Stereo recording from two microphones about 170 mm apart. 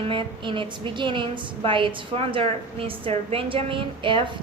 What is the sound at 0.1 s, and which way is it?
A woman's voice, 30° right (ahead or behind).